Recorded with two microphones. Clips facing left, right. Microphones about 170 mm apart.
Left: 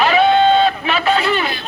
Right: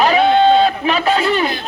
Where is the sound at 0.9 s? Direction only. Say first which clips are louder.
Right 1 dB; 35° right (ahead or behind).